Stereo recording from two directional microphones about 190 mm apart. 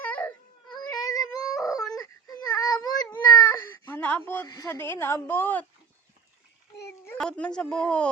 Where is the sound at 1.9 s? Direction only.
20° left (ahead or behind).